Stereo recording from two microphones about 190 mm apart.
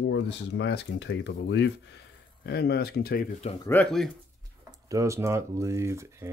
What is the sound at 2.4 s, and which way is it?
Speech, 55° left (ahead or behind).